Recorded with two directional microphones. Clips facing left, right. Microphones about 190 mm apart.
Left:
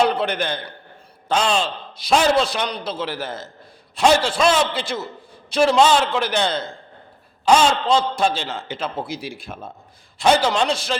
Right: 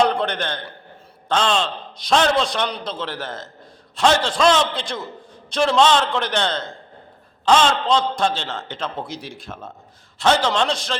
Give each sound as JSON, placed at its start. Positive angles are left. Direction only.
{"t": 0.0, "sound": "a man's voice", "side_deg": 5}